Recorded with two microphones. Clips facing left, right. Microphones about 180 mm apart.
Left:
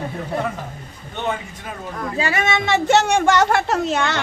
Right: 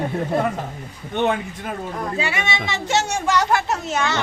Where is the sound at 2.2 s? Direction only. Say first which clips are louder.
Left 7 dB; 40° left (ahead or behind); by 4.2 s 60° left (ahead or behind).